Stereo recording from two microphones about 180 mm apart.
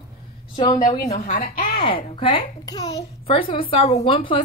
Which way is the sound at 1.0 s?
40° left (ahead or behind).